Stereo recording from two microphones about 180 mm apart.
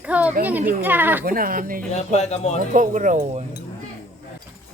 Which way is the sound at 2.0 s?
40° left (ahead or behind).